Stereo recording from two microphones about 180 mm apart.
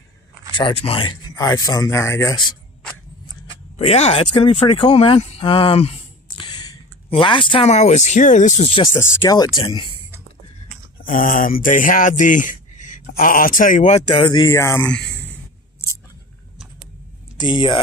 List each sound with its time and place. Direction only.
0.6 s speech: 30° left (ahead or behind)
3.7 s speech: 35° left (ahead or behind)
8.9 s speech: 15° left (ahead or behind)
9.6 s speech: 30° left (ahead or behind)
11.0 s speech: 50° left (ahead or behind); by 15.3 s 10° left (ahead or behind)
17.4 s speech: 25° left (ahead or behind)